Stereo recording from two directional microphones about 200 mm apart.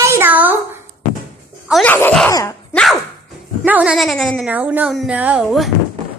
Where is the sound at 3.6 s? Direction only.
5° right (ahead or behind).